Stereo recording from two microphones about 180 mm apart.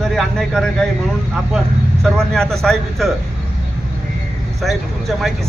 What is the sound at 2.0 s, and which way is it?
Speech, 5° left (ahead or behind).